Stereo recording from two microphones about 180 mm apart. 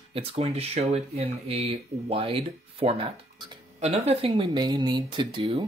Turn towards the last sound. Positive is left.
turn(degrees=-30)  # may be behind; listen again after turning